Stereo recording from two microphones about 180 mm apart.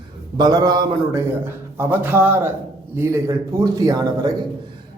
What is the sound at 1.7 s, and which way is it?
A man's voice, 10° right (ahead or behind).